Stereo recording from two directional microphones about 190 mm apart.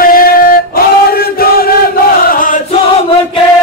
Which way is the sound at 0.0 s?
50° left (ahead or behind).